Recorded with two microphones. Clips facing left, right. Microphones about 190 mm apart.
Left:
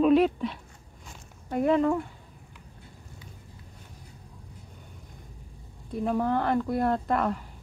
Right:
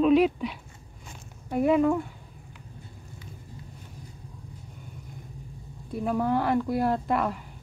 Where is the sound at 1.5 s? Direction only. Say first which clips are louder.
Right 1 dB; 10° right (ahead or behind).